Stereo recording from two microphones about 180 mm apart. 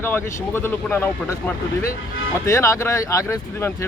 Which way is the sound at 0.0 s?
10° left (ahead or behind).